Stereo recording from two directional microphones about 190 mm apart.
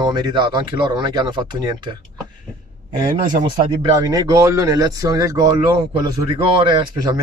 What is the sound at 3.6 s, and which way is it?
Speech, 25° right (ahead or behind).